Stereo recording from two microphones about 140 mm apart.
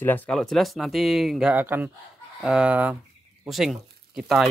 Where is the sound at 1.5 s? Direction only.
15° right (ahead or behind).